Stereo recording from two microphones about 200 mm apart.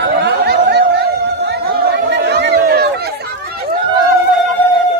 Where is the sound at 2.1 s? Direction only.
55° right (ahead or behind).